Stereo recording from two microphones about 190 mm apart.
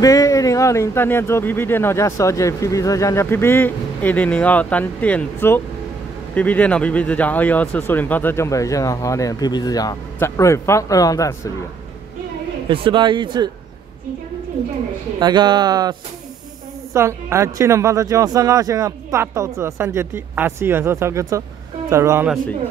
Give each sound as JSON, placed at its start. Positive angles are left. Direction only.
{"t": 0.0, "sound": "speech", "side_deg": 15}
{"t": 12.6, "sound": "speech", "side_deg": -25}
{"t": 15.1, "sound": "speech", "side_deg": -20}